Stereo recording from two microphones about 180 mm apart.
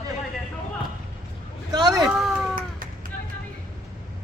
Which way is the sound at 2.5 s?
50° right (ahead or behind).